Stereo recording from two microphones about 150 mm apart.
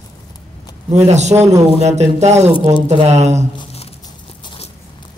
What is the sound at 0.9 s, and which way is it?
A man's voice, 50° right (ahead or behind).